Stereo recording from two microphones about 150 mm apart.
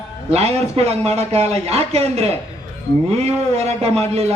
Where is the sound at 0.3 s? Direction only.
45° right (ahead or behind).